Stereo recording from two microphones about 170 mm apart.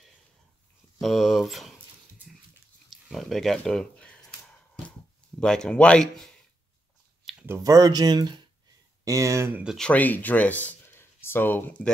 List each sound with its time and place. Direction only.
1.0 s speech: centre (ahead or behind)
2.9 s a sound: centre (ahead or behind)
5.4 s speech: 5° left (ahead or behind)
7.4 s speech: 15° right (ahead or behind)
9.8 s speech: 10° left (ahead or behind)